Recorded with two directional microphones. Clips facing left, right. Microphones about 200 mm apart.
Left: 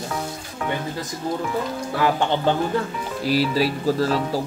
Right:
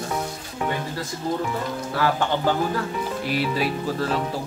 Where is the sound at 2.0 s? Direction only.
20° left (ahead or behind).